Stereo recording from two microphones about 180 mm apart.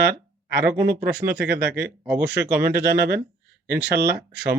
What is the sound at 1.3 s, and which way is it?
Speech, 65° right (ahead or behind).